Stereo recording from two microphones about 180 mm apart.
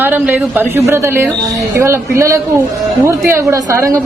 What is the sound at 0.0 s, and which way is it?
A man's voice, 10° right (ahead or behind).